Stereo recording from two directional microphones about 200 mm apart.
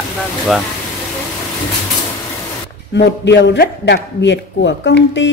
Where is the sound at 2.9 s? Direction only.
60° left (ahead or behind).